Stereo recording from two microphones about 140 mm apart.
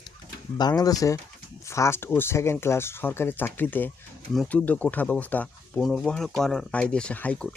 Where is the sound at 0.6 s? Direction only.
25° left (ahead or behind); by 5.8 s 10° left (ahead or behind).